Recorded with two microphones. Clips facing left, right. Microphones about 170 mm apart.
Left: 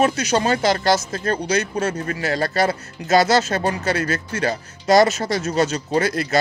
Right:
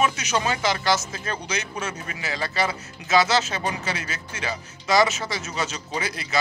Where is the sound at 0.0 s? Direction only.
35° left (ahead or behind).